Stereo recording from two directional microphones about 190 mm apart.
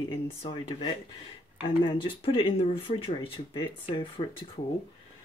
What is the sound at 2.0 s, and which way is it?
Speech, 30° left (ahead or behind).